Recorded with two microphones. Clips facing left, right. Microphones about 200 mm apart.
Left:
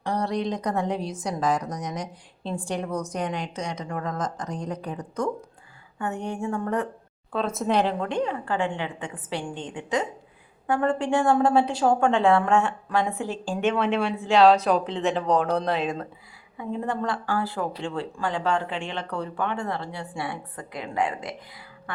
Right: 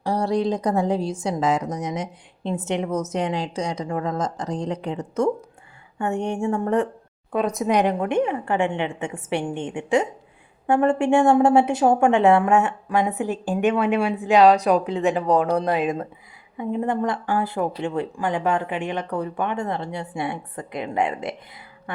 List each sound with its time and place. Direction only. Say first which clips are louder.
0.2 s speech: right 7 dB; 30° right (ahead or behind)
6.4 s speech: right 5 dB; 25° right (ahead or behind)
7.3 s speech: right 3 dB; 15° right (ahead or behind)